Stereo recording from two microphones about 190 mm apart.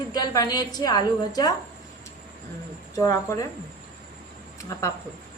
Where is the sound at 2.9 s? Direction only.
15° left (ahead or behind).